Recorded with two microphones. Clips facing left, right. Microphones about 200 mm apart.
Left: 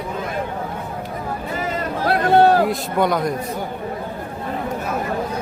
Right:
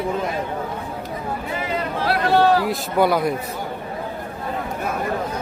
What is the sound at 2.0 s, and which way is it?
Speech, 50° left (ahead or behind).